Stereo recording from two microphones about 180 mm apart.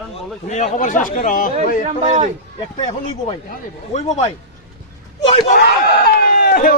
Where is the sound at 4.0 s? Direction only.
40° left (ahead or behind).